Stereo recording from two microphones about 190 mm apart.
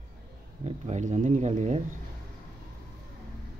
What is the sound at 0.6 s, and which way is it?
Speech, 40° right (ahead or behind).